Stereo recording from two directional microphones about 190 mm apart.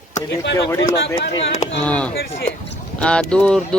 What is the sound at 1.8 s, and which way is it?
Speech, 5° left (ahead or behind).